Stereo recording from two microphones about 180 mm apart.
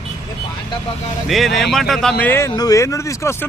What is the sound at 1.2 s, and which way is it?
Speech, centre (ahead or behind).